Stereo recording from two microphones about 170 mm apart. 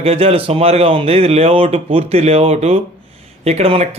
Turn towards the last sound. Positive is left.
turn(degrees=-40)  # may be behind; listen again after turning